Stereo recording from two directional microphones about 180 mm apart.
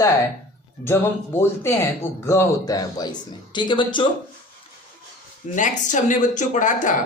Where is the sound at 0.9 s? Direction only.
10° left (ahead or behind).